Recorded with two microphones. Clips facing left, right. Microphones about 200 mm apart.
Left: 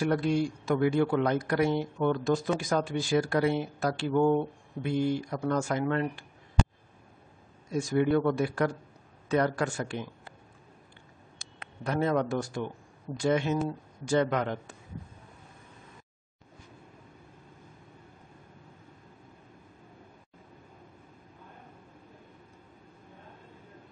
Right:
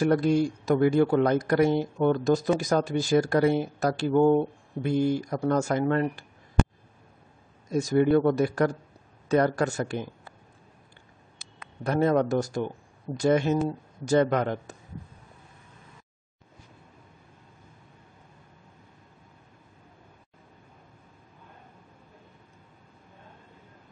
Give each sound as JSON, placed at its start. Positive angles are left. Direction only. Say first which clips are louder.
{"t": 0.0, "sound": "a man's voice", "louder": "right 4 dB", "side_deg": -40}
{"t": 7.7, "sound": "a man's voice", "louder": "right 4 dB", "side_deg": -40}
{"t": 11.8, "sound": "a man's voice", "louder": "right 4 dB", "side_deg": -40}